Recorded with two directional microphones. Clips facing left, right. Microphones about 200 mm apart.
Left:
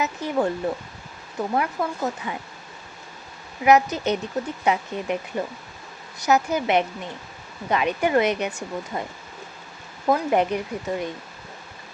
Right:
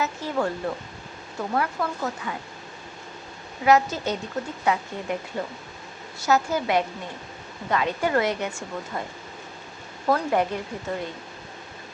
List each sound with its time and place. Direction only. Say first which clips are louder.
0.0 s speech: left 2 dB; 20° left (ahead or behind)
3.6 s speech: left 2 dB; 20° left (ahead or behind)
10.1 s speech: left 2 dB; 20° left (ahead or behind)